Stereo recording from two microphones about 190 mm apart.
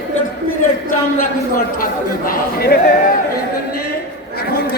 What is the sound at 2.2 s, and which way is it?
Speech, 55° left (ahead or behind).